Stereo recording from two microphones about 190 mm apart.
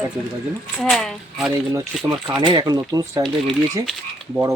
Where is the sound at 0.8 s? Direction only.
5° left (ahead or behind).